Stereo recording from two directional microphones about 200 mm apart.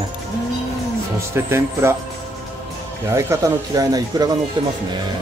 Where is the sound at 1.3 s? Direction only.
10° right (ahead or behind).